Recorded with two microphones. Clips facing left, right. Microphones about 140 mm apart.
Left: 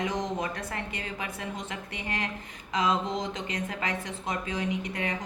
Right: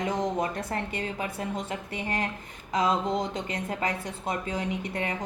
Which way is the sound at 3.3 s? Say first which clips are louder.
Right 2 dB; 30° right (ahead or behind).